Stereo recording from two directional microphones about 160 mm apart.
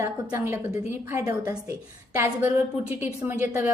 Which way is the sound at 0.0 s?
15° right (ahead or behind).